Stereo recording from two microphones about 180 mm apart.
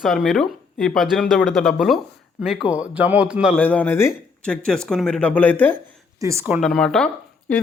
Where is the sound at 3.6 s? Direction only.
10° left (ahead or behind).